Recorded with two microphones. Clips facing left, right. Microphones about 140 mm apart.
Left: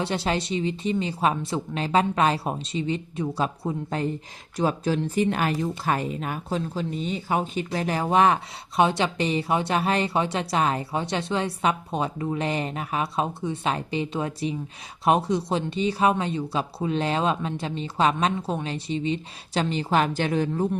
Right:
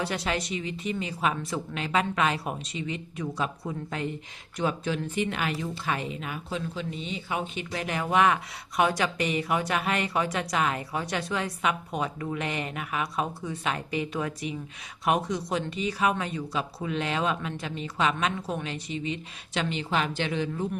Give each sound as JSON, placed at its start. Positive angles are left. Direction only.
{"t": 0.0, "sound": "a woman's voice", "side_deg": 30}